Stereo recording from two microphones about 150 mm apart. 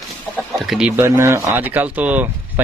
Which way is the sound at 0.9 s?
15° right (ahead or behind).